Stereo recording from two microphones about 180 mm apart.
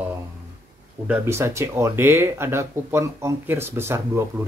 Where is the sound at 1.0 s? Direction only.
15° right (ahead or behind).